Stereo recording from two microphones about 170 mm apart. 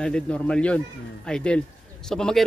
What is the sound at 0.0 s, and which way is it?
A man's voice, 5° left (ahead or behind).